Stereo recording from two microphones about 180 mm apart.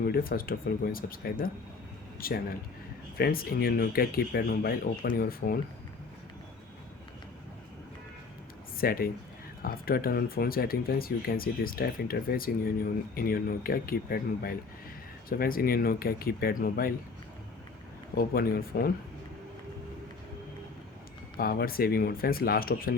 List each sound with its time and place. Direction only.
0.0 s speech: 55° left (ahead or behind)
8.8 s speech: 55° left (ahead or behind)
18.2 s speech: 55° left (ahead or behind)
21.3 s speech: 55° left (ahead or behind)